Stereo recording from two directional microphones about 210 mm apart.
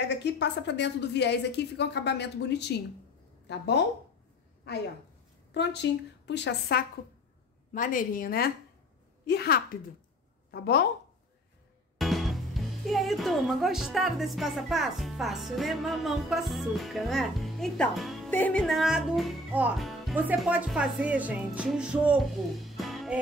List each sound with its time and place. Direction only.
0.2 s a woman's voice: 55° left (ahead or behind)
7.7 s a woman's voice: 40° left (ahead or behind)
12.0 s speech: centre (ahead or behind)
22.6 s music: centre (ahead or behind)